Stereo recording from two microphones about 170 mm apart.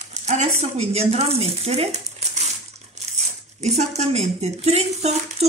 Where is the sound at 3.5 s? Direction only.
40° right (ahead or behind).